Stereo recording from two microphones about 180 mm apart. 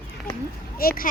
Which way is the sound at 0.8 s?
55° left (ahead or behind).